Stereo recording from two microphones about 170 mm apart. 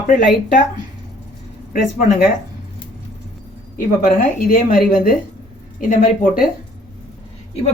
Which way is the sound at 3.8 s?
55° left (ahead or behind).